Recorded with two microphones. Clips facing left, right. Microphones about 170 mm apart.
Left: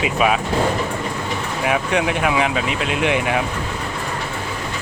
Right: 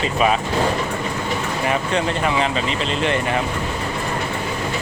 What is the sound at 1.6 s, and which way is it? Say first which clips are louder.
Speech: left 2 dB; 5° left (ahead or behind).